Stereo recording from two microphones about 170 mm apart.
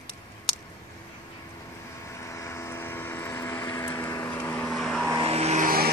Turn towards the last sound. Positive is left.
turn(degrees=-60)  # may be behind; listen again after turning